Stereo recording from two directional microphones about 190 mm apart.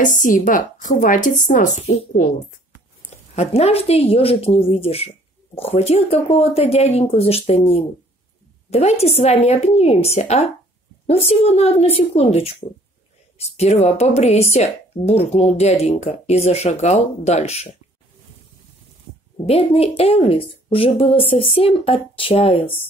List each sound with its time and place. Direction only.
0.0 s a woman's voice: 45° left (ahead or behind)
3.3 s speech: 35° left (ahead or behind)
19.3 s a woman's voice: 30° left (ahead or behind)